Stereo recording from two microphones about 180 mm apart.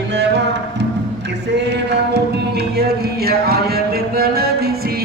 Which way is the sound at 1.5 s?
70° right (ahead or behind).